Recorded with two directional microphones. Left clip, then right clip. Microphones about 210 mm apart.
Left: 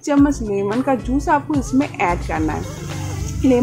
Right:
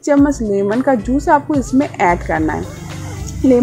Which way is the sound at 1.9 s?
20° right (ahead or behind).